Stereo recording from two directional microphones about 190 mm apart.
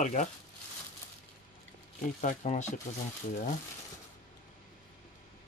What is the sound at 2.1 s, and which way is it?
Speech, 40° left (ahead or behind).